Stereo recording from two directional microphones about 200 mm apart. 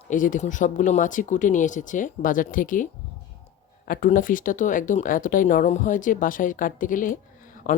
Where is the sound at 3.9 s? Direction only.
45° left (ahead or behind).